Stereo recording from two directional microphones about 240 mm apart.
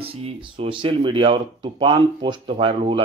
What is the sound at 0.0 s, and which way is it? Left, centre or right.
Speech, right.